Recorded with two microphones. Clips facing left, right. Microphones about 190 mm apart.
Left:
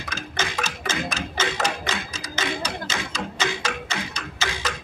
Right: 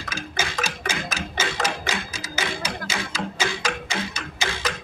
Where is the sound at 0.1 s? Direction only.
10° right (ahead or behind).